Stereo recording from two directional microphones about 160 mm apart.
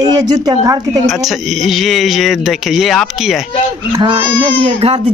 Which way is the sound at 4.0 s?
30° right (ahead or behind).